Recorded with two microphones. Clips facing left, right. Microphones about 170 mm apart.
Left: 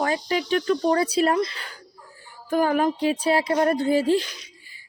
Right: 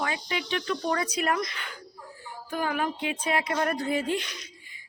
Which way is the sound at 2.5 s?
45° left (ahead or behind).